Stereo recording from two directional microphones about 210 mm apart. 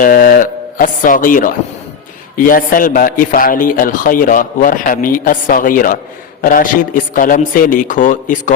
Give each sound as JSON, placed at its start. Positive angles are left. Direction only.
{"t": 0.0, "sound": "a man's voice", "side_deg": 45}